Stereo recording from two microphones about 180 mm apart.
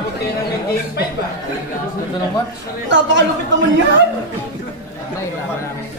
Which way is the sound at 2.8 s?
85° right.